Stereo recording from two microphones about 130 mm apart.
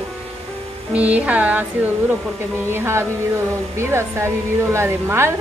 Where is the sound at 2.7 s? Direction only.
20° right (ahead or behind).